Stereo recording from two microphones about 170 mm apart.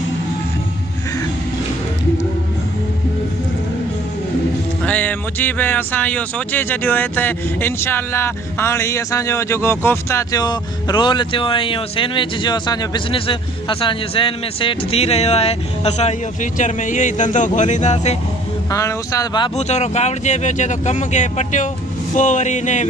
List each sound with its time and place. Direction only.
4.8 s speech: 10° left (ahead or behind); by 18.1 s 45° left (ahead or behind)
18.7 s speech: 20° left (ahead or behind)
19.5 s speech: 40° left (ahead or behind)